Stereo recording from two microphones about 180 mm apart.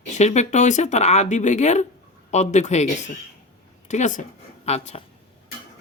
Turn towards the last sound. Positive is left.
turn(degrees=35)  # may be behind; listen again after turning